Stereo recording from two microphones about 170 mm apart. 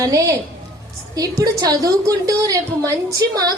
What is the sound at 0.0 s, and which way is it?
A woman's voice, 20° right (ahead or behind).